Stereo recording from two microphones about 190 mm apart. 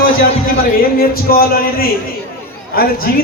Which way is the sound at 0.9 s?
50° left (ahead or behind).